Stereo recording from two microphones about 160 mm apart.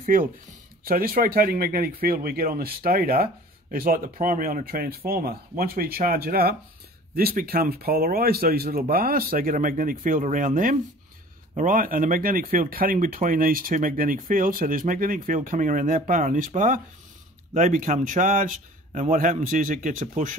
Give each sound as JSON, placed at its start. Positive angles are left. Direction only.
{"t": 0.0, "sound": "speech", "side_deg": -65}